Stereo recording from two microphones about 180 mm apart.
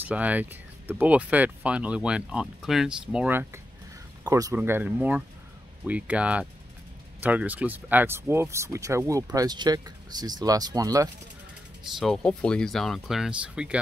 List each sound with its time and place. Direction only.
0.0 s speech: 10° right (ahead or behind)
11.8 s speech: centre (ahead or behind)